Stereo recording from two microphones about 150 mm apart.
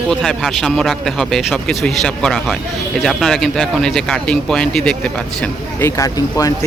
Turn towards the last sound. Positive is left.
turn(degrees=25)  # may be behind; listen again after turning